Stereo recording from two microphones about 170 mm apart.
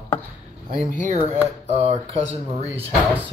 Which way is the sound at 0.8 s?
50° right (ahead or behind).